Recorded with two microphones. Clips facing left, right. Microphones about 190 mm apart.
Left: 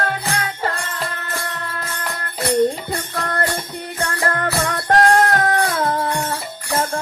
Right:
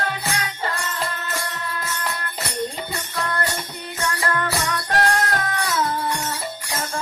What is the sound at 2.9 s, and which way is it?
Music, 50° left (ahead or behind).